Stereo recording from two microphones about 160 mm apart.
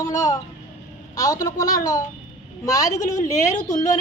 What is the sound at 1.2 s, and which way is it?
A woman's voice, 20° left (ahead or behind).